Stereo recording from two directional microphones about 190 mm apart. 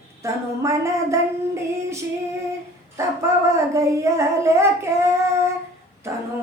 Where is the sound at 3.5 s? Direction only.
15° right (ahead or behind).